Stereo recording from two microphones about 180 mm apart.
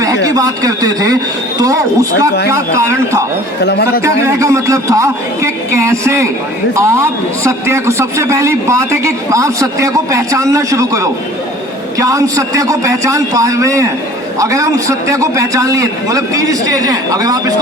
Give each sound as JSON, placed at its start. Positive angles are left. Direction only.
{"t": 0.0, "sound": "a man's voice", "side_deg": -20}
{"t": 3.6, "sound": "speech", "side_deg": 65}
{"t": 4.0, "sound": "a man's voice", "side_deg": -15}